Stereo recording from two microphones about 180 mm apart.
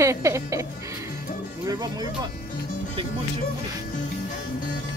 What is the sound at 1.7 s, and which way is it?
Speech, 20° right (ahead or behind).